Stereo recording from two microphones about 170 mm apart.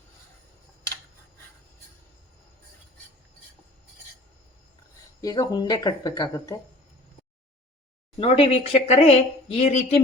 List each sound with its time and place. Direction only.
5.2 s speech: 20° left (ahead or behind)
8.2 s speech: 30° left (ahead or behind)